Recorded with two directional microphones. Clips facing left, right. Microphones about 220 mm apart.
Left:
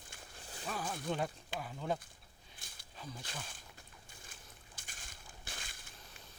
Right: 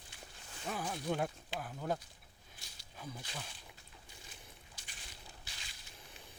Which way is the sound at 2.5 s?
50° left (ahead or behind).